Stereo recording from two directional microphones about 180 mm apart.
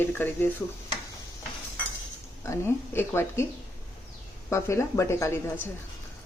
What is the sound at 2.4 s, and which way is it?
Speech, 15° left (ahead or behind).